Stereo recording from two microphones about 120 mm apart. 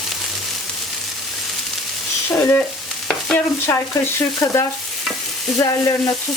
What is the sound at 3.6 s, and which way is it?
Stir, 25° left (ahead or behind).